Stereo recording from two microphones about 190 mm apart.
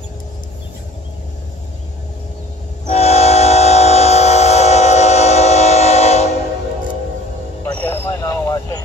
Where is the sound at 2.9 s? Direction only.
35° left (ahead or behind).